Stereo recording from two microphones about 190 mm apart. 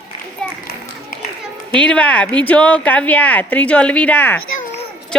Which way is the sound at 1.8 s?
5° left (ahead or behind).